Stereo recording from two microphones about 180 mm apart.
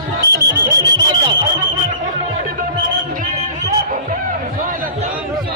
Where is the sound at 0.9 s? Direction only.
25° right (ahead or behind).